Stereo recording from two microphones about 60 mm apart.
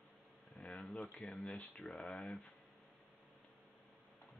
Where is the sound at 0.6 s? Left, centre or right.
Centre.